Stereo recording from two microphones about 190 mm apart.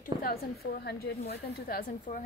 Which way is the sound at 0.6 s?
55° left (ahead or behind).